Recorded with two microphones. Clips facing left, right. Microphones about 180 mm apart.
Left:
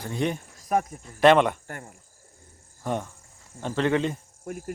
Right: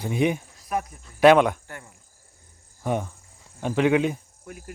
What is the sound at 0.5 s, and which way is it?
Cricket, 45° left (ahead or behind).